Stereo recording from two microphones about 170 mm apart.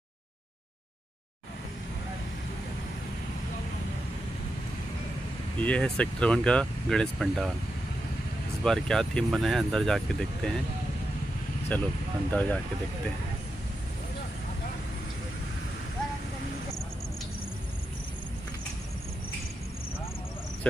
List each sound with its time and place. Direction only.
5.6 s speech: 5° left (ahead or behind)
8.6 s speech: 5° left (ahead or behind)
11.7 s speech: 10° left (ahead or behind)